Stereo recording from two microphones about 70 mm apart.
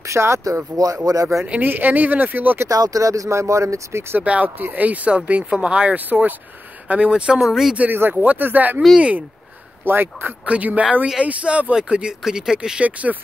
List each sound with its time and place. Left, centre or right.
0.0 s speech: right
0.7 s speech: right
1.4 s speech: right
2.7 s speech: right
4.2 s speech: centre
7.7 s speech: right
9.8 s speech: right